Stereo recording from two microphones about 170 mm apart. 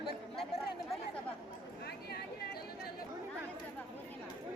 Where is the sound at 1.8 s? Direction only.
70° left (ahead or behind).